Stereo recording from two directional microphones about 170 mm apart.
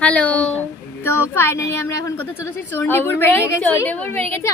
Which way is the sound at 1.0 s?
15° left (ahead or behind).